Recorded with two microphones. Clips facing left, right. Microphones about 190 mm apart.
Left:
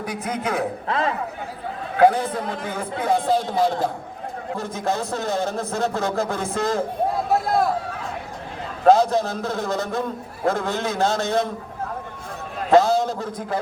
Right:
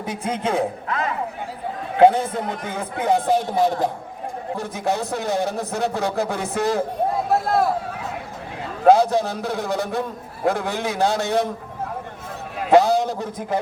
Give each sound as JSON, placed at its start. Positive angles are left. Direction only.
{"t": 0.0, "sound": "a man's voice", "side_deg": -25}
{"t": 0.9, "sound": "a man's voice", "side_deg": 30}
{"t": 2.0, "sound": "a man's voice", "side_deg": -25}
{"t": 7.3, "sound": "speech", "side_deg": 0}
{"t": 8.8, "sound": "a man's voice", "side_deg": -15}
{"t": 12.5, "sound": "a man's voice", "side_deg": -15}